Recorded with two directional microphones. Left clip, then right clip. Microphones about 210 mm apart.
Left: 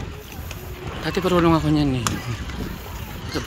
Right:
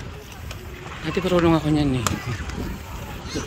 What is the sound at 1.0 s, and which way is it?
Speech, 5° right (ahead or behind).